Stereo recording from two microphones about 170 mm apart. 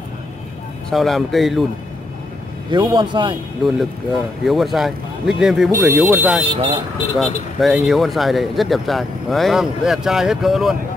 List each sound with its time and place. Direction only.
0.8 s speech: centre (ahead or behind)
2.7 s speech: 25° right (ahead or behind)
3.6 s speech: centre (ahead or behind)
6.5 s speech: 35° right (ahead or behind)
7.2 s speech: centre (ahead or behind)